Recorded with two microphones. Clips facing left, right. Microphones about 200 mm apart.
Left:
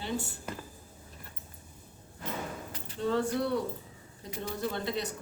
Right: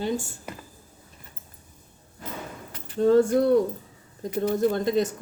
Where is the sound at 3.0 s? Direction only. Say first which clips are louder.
Right 11 dB; 45° right (ahead or behind).